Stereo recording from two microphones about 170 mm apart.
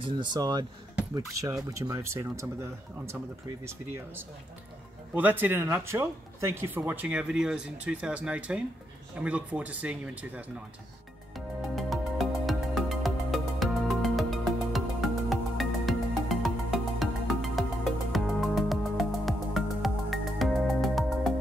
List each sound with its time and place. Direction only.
0.0 s speech: 25° right (ahead or behind); by 10.4 s 10° right (ahead or behind)
11.3 s music: centre (ahead or behind)